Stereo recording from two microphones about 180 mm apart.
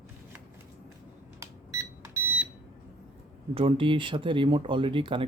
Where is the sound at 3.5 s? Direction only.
30° right (ahead or behind).